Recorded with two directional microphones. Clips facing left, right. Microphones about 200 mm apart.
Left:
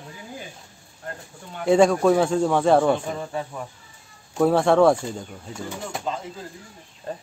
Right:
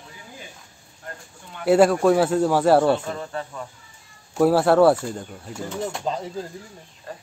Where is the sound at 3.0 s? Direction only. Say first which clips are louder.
Left 1 dB; 10° left (ahead or behind).